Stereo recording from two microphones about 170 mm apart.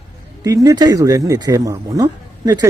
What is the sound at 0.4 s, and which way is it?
Speech, 20° right (ahead or behind).